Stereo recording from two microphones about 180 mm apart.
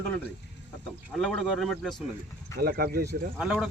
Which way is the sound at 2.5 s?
60° right (ahead or behind).